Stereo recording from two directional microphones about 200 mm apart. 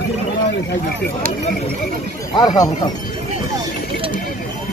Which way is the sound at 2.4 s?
20° left (ahead or behind).